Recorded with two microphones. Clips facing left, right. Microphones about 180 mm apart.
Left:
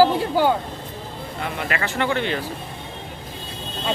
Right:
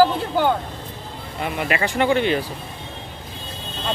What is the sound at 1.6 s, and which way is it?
Speech, 15° right (ahead or behind).